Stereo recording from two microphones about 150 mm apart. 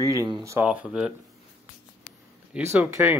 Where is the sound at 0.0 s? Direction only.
25° right (ahead or behind).